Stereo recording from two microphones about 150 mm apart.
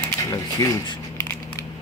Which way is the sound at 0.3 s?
25° left (ahead or behind).